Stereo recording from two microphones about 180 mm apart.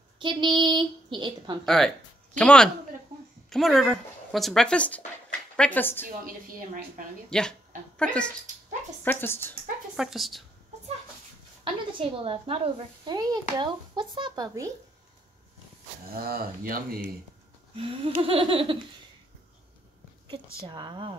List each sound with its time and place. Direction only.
0.2 s speech: 25° right (ahead or behind)
2.3 s a woman's voice: 5° left (ahead or behind)
7.2 s a woman's voice: 5° left (ahead or behind)
9.9 s a woman's voice: centre (ahead or behind)
11.6 s speech: 30° right (ahead or behind)
16.2 s speech: 55° right (ahead or behind)
17.7 s a sound: 30° right (ahead or behind)
20.6 s speech: 25° right (ahead or behind)